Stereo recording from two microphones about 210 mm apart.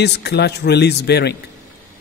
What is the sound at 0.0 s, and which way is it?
A man's voice, 50° left (ahead or behind).